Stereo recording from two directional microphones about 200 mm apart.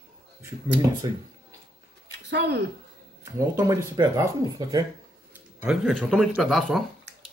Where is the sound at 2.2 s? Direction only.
55° right (ahead or behind).